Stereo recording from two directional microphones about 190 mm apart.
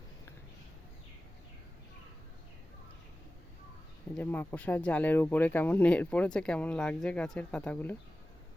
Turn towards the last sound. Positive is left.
turn(degrees=5)  # may be behind; listen again after turning